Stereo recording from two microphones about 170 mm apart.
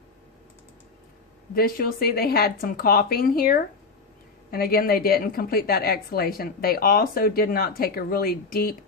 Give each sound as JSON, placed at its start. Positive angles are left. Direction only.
{"t": 1.5, "sound": "a woman's voice", "side_deg": 60}